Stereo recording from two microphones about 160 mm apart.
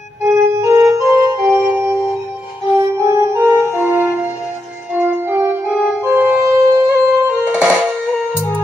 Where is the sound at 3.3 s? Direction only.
10° right (ahead or behind).